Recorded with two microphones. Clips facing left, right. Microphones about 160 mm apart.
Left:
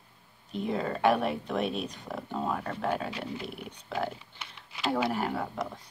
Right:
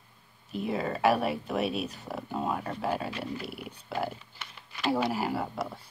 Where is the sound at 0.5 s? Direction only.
5° right (ahead or behind).